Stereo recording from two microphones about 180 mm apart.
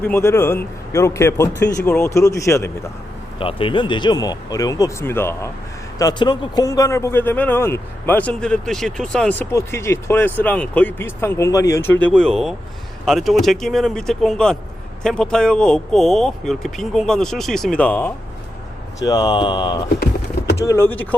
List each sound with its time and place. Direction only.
0.0 s speech: 15° left (ahead or behind)
3.3 s speech: 30° left (ahead or behind); by 18.1 s 10° left (ahead or behind)
18.9 s speech: 20° left (ahead or behind)
20.7 s speech: 15° left (ahead or behind)